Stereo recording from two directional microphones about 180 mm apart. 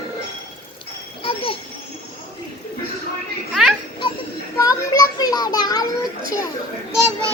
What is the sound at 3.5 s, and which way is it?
Children playing, centre (ahead or behind).